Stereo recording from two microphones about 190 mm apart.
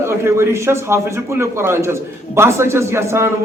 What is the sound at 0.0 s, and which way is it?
A man's voice, 15° right (ahead or behind).